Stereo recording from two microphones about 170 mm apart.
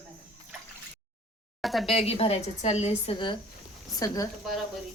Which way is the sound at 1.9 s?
35° left (ahead or behind).